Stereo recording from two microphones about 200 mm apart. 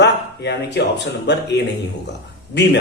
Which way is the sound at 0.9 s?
60° left (ahead or behind).